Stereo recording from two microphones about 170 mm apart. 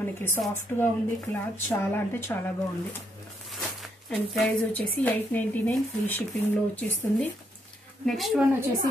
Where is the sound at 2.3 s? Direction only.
15° left (ahead or behind).